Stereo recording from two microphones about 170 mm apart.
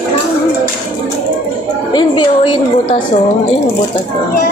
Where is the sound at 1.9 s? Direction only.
30° left (ahead or behind).